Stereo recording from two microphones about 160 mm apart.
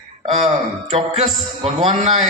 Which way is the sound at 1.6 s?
40° right (ahead or behind).